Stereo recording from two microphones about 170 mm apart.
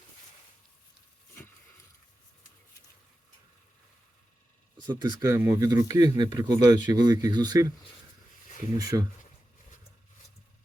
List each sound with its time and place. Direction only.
4.9 s speech: 25° right (ahead or behind)
8.8 s speech: 20° right (ahead or behind)